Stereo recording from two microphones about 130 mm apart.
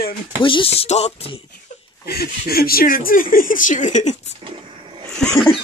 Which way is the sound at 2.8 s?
90° left.